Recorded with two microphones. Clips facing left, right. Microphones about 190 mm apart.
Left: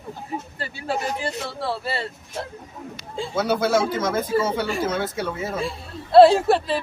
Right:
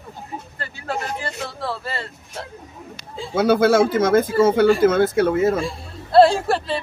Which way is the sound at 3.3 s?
55° right (ahead or behind).